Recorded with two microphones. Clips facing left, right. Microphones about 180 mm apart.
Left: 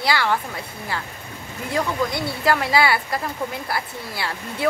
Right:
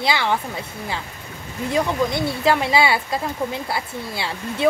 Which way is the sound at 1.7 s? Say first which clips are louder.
Right 2 dB; 20° right (ahead or behind).